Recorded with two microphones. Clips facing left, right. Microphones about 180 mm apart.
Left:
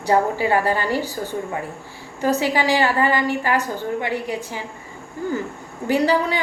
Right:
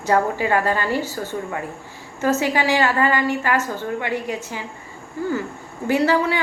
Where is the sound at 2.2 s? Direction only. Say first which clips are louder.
Even; 15° left (ahead or behind).